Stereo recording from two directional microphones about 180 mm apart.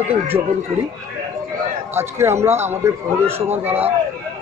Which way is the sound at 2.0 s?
15° right (ahead or behind).